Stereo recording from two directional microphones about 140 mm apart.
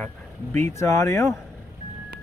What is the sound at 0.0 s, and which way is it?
Speech, 15° left (ahead or behind).